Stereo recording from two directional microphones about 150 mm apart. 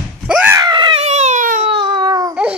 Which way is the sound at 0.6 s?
30° right (ahead or behind).